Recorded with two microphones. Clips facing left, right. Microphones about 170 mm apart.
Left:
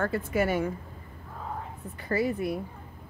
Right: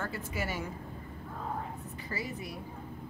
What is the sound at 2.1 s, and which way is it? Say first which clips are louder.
Speech: left 12 dB; 55° left (ahead or behind).